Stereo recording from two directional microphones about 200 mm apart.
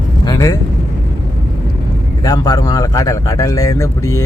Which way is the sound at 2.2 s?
20° left (ahead or behind).